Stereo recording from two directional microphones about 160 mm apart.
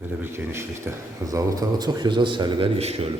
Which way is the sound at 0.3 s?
15° right (ahead or behind).